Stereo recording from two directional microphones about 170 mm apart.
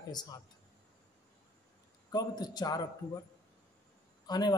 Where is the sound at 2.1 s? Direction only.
25° left (ahead or behind).